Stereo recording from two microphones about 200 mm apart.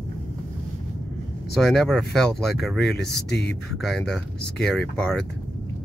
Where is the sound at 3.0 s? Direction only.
55° left (ahead or behind).